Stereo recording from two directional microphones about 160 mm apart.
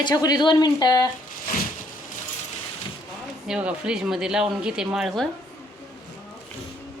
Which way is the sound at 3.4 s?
5° right (ahead or behind).